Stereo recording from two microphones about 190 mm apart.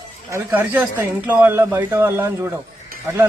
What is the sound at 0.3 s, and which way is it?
Speech, 15° right (ahead or behind).